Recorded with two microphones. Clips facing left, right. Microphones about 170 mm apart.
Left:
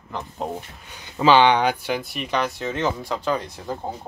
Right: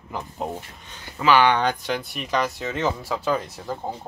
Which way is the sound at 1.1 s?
25° left (ahead or behind).